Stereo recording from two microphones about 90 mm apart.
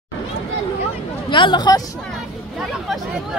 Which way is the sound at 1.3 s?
60° left (ahead or behind).